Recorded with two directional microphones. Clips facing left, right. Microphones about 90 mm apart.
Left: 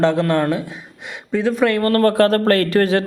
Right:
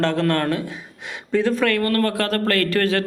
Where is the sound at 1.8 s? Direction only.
35° left (ahead or behind).